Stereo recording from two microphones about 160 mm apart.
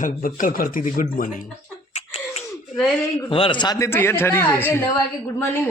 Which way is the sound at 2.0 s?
40° left (ahead or behind).